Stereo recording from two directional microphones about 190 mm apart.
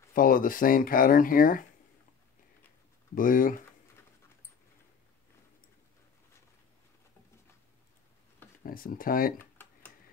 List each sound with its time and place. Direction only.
0.1 s speech: 50° left (ahead or behind)
3.2 s speech: 45° left (ahead or behind)
8.6 s speech: 50° left (ahead or behind)